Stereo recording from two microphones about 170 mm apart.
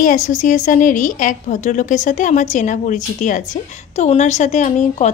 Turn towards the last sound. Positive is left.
turn(degrees=40)  # may be behind; listen again after turning